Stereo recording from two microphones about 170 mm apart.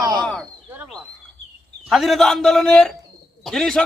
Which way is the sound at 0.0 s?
25° right (ahead or behind).